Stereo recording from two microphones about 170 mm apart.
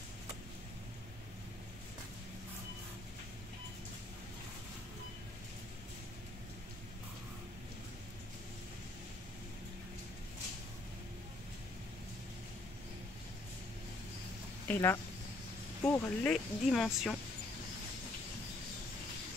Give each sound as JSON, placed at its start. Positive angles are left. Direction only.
{"t": 14.7, "sound": "speech", "side_deg": 15}
{"t": 15.8, "sound": "speech", "side_deg": 5}